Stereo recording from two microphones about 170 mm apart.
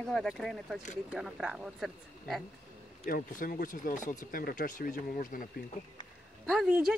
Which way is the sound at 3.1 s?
55° left (ahead or behind).